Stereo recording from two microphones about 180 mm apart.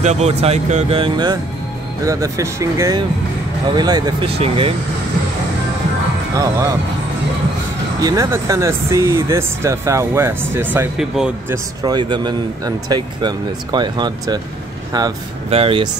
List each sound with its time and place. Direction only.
0.0 s speech: 35° right (ahead or behind)
8.0 s speech: 20° right (ahead or behind)
11.8 s speech: 25° right (ahead or behind)